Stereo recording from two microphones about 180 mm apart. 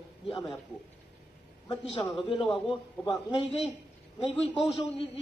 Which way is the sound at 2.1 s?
25° left (ahead or behind).